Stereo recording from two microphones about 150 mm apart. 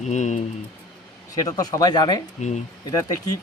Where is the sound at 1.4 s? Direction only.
25° left (ahead or behind).